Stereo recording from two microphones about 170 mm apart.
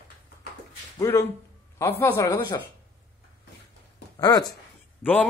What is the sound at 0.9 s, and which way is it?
Speech, 15° left (ahead or behind).